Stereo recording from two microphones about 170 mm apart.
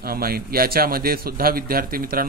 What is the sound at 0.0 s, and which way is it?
A man's voice, 60° right (ahead or behind).